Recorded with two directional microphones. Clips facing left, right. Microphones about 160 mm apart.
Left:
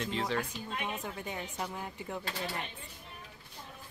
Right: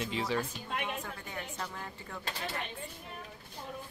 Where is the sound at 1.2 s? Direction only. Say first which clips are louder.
Left 2 dB; 15° left (ahead or behind).